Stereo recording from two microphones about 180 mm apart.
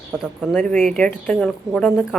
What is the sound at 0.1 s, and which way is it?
A woman's voice, 5° right (ahead or behind).